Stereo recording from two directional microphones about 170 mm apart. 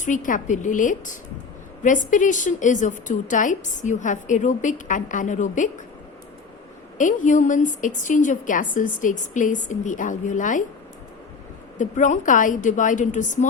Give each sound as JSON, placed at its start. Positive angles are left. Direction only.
{"t": 0.0, "sound": "a woman's voice", "side_deg": 50}
{"t": 7.0, "sound": "a woman's voice", "side_deg": 50}
{"t": 11.8, "sound": "a woman's voice", "side_deg": 45}